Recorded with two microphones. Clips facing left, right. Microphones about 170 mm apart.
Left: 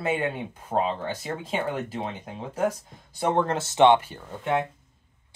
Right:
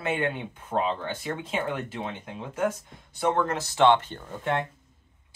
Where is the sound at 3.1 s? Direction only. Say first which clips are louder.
Left 1 dB; 30° left (ahead or behind).